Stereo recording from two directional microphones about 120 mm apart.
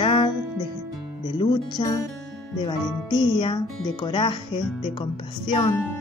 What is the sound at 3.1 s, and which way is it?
Speech, 40° left (ahead or behind).